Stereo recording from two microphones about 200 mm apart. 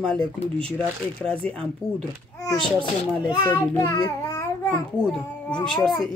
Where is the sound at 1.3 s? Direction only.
5° left (ahead or behind).